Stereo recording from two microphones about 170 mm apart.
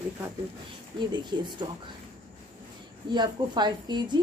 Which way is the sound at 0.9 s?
25° right (ahead or behind).